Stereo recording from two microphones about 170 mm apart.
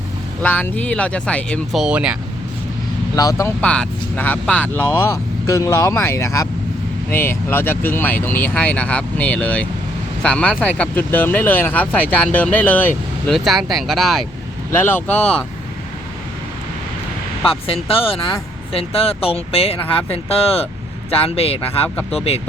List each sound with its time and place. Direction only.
0.4 s speech: 10° left (ahead or behind); by 2.1 s 5° right (ahead or behind)
3.2 s speech: 20° left (ahead or behind)
3.6 s speech: 5° left (ahead or behind)
14.7 s speech: 10° left (ahead or behind)
17.5 s speech: 35° left (ahead or behind)